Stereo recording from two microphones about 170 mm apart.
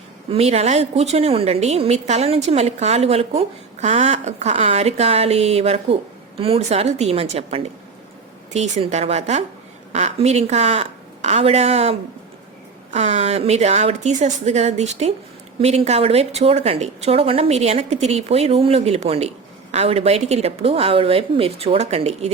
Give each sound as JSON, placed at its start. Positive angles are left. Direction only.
{"t": 0.3, "sound": "a woman's voice", "side_deg": -40}